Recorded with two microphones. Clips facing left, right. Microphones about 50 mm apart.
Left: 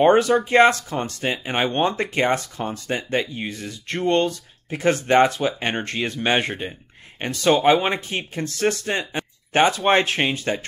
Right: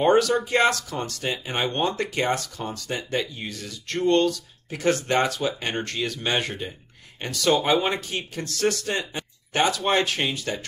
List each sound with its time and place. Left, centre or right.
0.0 s speech: left